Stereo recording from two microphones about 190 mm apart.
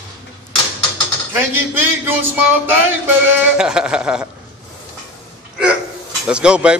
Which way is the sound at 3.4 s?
5° right (ahead or behind).